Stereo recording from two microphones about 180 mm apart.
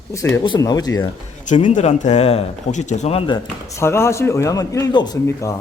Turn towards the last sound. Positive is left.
turn(degrees=15)  # may be behind; listen again after turning